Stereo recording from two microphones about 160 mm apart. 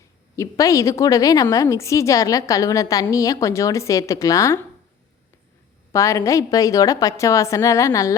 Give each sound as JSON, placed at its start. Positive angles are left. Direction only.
{"t": 0.3, "sound": "a woman's voice", "side_deg": 20}
{"t": 5.9, "sound": "a woman's voice", "side_deg": 20}